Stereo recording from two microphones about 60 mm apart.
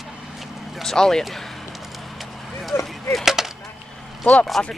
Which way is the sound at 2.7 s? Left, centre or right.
Left.